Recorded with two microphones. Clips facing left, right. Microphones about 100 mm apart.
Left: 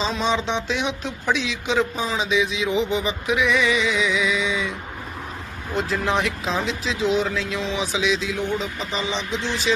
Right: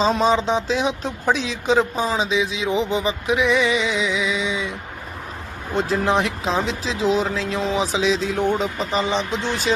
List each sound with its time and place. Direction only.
0.1 s speech: 40° right (ahead or behind)
5.7 s speech: 30° right (ahead or behind)